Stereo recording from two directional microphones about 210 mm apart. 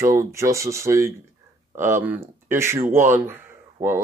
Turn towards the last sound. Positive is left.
turn(degrees=-15)  # may be behind; listen again after turning